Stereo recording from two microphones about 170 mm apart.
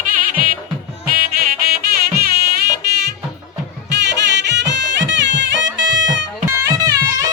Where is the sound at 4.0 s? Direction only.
90° right.